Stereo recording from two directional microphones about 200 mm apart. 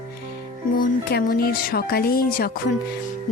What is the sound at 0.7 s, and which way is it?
Speech, 45° left (ahead or behind).